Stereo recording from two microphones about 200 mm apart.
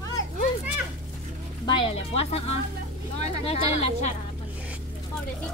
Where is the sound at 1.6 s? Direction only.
25° left (ahead or behind).